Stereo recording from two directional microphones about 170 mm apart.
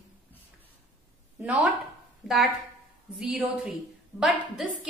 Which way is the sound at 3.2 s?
5° right (ahead or behind).